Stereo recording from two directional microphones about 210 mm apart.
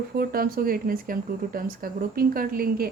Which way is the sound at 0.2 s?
45° right (ahead or behind).